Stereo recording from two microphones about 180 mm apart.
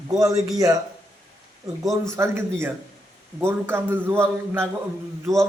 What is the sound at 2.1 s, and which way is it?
A man's voice, 15° right (ahead or behind).